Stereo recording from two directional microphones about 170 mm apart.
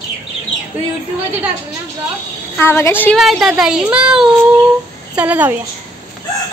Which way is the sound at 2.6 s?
15° left (ahead or behind).